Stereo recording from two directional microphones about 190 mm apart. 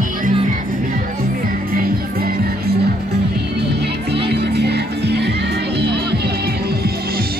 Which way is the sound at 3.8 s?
60° right (ahead or behind).